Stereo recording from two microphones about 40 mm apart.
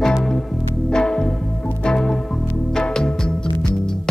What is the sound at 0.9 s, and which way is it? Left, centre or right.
Music, centre.